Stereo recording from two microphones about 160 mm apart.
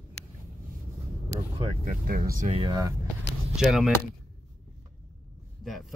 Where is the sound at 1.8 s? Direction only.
65° right (ahead or behind).